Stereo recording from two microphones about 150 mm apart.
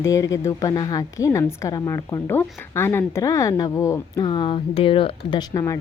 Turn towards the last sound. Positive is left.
turn(degrees=25)  # may be behind; listen again after turning